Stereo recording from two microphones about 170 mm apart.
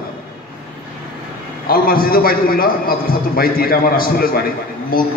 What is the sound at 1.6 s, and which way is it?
A man's voice, 60° left (ahead or behind).